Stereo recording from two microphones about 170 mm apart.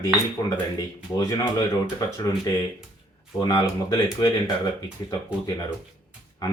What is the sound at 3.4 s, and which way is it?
Speech, 25° left (ahead or behind).